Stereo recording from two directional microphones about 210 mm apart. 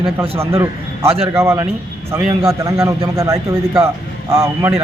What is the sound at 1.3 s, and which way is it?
A man's voice, 10° right (ahead or behind).